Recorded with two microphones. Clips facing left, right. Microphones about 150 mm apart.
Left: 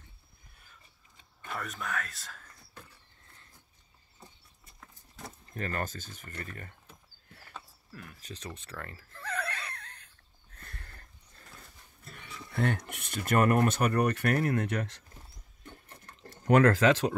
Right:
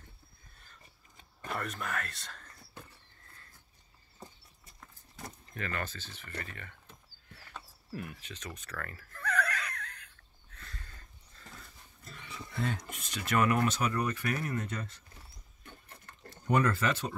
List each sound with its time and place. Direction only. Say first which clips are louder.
1.5 s speech: even; centre (ahead or behind)
4.7 s horse: even; centre (ahead or behind)
5.5 s speech: left 3 dB; 40° left (ahead or behind)
7.9 s speech: right 7 dB; 20° right (ahead or behind)
8.2 s a sound: left 2 dB; 35° left (ahead or behind)
10.6 s a sound: left 1 dB; 60° left (ahead or behind)
12.1 s speech: even; 55° left (ahead or behind); by 15.0 s 80° left
16.3 s speech: left 6 dB; 90° left